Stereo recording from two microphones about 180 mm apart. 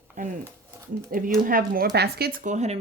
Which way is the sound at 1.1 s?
55° right (ahead or behind).